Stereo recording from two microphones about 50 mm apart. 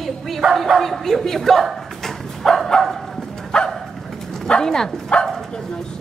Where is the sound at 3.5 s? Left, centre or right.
Centre.